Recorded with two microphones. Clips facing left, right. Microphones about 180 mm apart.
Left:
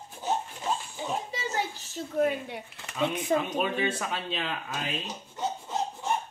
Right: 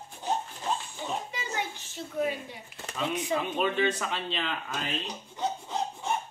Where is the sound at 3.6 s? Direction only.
5° left (ahead or behind).